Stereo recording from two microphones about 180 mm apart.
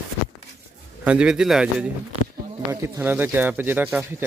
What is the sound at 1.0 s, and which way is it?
Speech, 5° right (ahead or behind).